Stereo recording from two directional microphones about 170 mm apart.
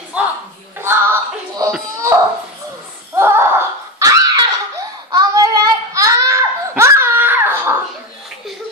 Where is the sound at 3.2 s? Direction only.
15° right (ahead or behind).